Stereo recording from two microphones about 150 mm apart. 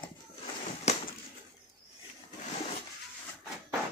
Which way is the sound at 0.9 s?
45° left (ahead or behind).